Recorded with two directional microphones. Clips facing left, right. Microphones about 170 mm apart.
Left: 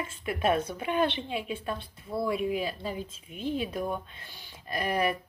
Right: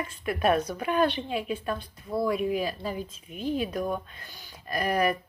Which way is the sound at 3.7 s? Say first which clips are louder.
Right 2 dB; 45° right (ahead or behind).